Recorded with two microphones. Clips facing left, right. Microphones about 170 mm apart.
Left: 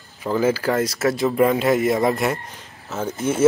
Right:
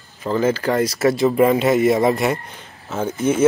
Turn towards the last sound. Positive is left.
turn(degrees=0)  # may be behind; listen again after turning